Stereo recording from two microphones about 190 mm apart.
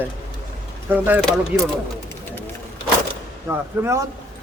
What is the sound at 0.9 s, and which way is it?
Speech, 10° right (ahead or behind).